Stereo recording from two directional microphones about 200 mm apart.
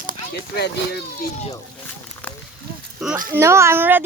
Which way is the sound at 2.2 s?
10° left (ahead or behind).